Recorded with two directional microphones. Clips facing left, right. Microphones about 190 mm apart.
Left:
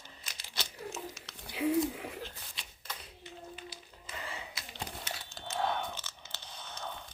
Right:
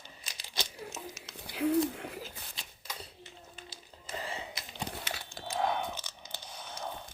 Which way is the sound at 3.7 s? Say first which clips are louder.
Right 4 dB; 25° right (ahead or behind).